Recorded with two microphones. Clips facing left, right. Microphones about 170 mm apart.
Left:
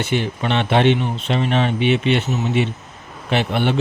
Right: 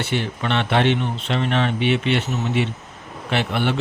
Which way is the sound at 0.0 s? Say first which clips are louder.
Left 3 dB; 15° left (ahead or behind).